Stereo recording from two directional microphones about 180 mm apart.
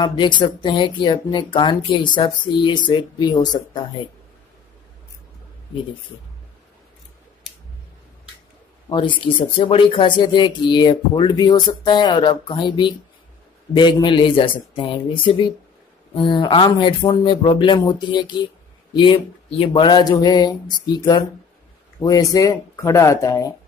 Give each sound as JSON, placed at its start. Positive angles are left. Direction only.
{"t": 0.0, "sound": "speech", "side_deg": 25}
{"t": 8.8, "sound": "speech", "side_deg": 25}